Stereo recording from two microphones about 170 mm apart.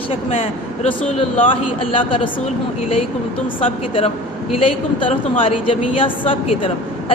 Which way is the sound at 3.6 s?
30° left (ahead or behind).